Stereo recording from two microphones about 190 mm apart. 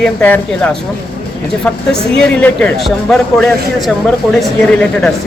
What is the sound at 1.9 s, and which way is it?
Speech, 5° left (ahead or behind).